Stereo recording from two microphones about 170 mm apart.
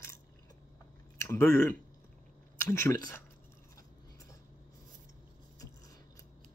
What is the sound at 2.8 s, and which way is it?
Speech, 20° left (ahead or behind).